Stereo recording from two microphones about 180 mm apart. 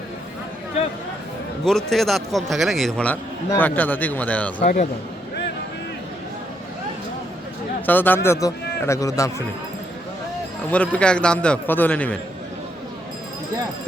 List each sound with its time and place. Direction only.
1.6 s a man's voice: centre (ahead or behind)
4.6 s speech: 45° left (ahead or behind)
7.9 s a man's voice: 10° left (ahead or behind)
10.7 s a man's voice: 5° left (ahead or behind)